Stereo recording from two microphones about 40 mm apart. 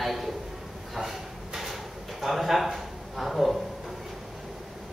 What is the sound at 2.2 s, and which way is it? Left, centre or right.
A man's voice, centre.